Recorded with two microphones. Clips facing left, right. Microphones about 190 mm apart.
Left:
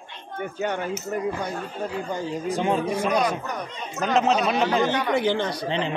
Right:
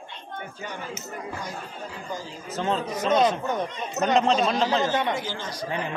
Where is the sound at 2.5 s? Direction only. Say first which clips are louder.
Left 2 dB; 15° left (ahead or behind).